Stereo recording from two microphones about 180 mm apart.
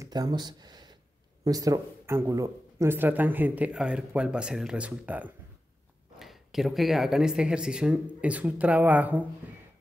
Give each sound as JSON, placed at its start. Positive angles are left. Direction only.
{"t": 0.0, "sound": "speech", "side_deg": -20}